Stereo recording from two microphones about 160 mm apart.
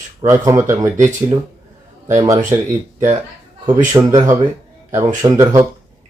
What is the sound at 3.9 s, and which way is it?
Speech, 20° right (ahead or behind).